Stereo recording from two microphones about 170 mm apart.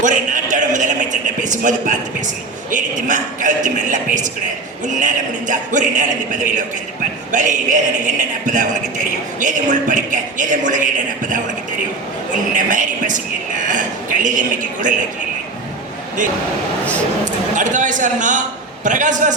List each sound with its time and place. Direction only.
0.0 s a man's voice: 45° right (ahead or behind)
9.9 s a man's voice: 50° right (ahead or behind)
12.5 s a man's voice: 50° right (ahead or behind)
17.6 s a man's voice: 45° right (ahead or behind)